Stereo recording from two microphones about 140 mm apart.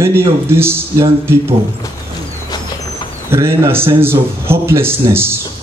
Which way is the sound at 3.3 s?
20° right (ahead or behind).